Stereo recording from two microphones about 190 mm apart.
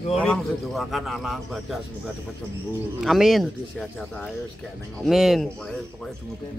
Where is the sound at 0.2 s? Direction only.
5° left (ahead or behind).